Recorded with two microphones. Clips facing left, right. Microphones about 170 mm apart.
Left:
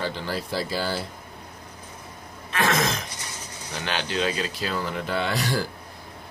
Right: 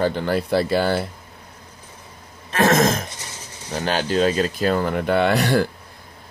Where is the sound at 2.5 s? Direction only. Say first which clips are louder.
Right 7 dB; 45° right (ahead or behind).